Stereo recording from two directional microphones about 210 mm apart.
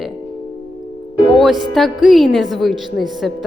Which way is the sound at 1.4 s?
Centre (ahead or behind).